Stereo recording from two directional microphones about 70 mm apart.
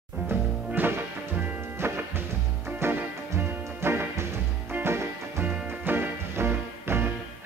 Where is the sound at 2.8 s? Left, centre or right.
Right.